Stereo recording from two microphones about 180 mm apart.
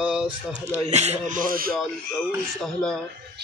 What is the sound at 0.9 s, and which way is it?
Speech, 40° right (ahead or behind).